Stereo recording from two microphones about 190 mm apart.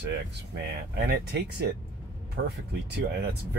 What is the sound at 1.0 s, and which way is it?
Speech, 60° right (ahead or behind).